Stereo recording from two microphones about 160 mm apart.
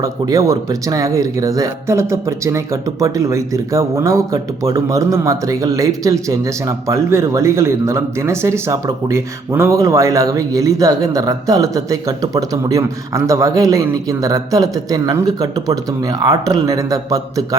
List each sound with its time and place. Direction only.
0.0 s speech: 20° right (ahead or behind)